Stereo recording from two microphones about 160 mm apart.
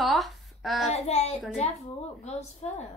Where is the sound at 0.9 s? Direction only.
40° left (ahead or behind).